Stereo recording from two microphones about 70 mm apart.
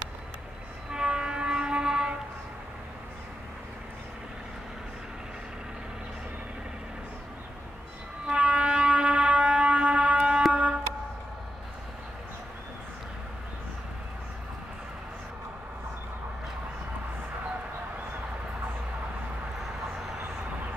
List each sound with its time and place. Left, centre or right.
0.9 s music: centre
8.3 s music: centre
10.5 s a sound: centre